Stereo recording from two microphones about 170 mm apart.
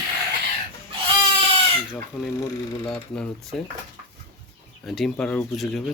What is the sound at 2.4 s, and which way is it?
Speech, 30° left (ahead or behind).